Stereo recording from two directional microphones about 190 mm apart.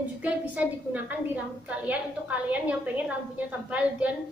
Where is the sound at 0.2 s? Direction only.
10° right (ahead or behind).